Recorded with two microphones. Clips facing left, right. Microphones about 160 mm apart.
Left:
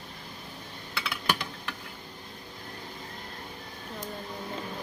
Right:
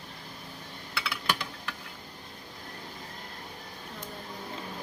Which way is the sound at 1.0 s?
45° left (ahead or behind).